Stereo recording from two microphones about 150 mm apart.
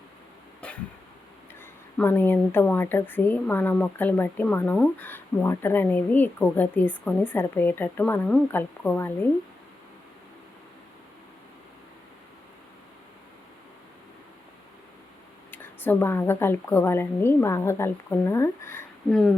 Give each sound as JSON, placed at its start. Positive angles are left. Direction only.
{"t": 0.6, "sound": "cough", "side_deg": 10}
{"t": 2.0, "sound": "a woman's voice", "side_deg": 15}
{"t": 15.5, "sound": "a woman's voice", "side_deg": 15}